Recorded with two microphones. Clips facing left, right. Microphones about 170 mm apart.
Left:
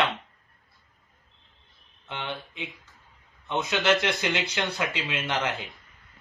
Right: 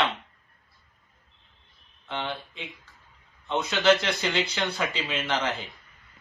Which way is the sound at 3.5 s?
20° left (ahead or behind).